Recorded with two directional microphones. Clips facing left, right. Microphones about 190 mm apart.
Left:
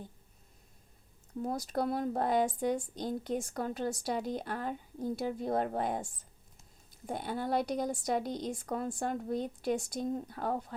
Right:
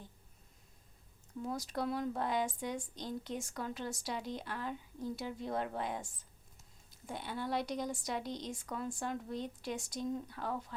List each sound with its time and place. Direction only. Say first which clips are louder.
1.5 s a woman's voice: left 4 dB; 50° left (ahead or behind)
7.1 s a woman's voice: left 5 dB; 50° left (ahead or behind)